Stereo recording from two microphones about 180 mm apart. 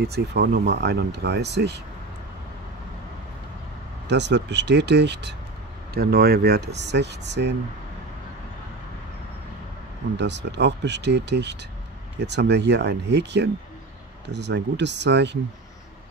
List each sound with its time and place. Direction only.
0.0 s speech: 65° right (ahead or behind)
4.1 s speech: 75° right (ahead or behind)
5.9 s speech: 60° right (ahead or behind)
10.1 s speech: 75° right (ahead or behind)